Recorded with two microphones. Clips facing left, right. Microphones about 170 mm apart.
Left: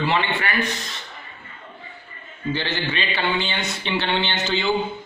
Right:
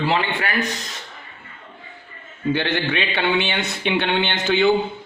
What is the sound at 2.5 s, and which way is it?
Speech, 55° right (ahead or behind).